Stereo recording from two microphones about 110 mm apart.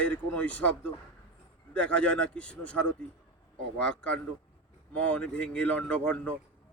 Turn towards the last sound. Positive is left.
turn(degrees=10)  # may be behind; listen again after turning